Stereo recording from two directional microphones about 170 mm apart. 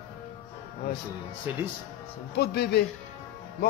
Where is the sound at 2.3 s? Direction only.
70° left (ahead or behind).